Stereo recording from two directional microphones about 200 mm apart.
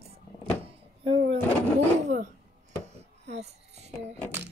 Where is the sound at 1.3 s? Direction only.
35° right (ahead or behind).